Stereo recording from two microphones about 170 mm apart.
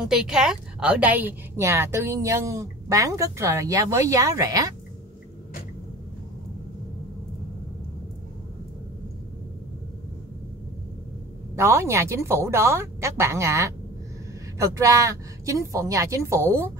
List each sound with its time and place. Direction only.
0.0 s a woman's voice: 5° right (ahead or behind); by 4.7 s 20° right (ahead or behind)
11.5 s a woman's voice: 15° right (ahead or behind)